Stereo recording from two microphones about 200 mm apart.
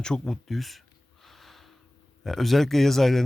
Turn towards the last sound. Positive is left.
turn(degrees=0)  # may be behind; listen again after turning